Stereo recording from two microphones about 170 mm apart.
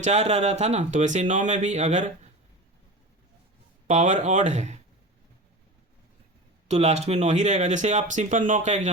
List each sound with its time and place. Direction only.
0.0 s speech: 40° right (ahead or behind)
3.8 s speech: 45° right (ahead or behind)
6.7 s speech: 40° right (ahead or behind)